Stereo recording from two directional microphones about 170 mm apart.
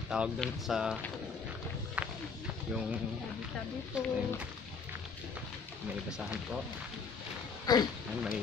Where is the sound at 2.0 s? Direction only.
10° right (ahead or behind).